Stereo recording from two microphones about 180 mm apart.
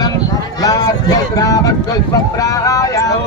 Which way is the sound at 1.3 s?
20° left (ahead or behind).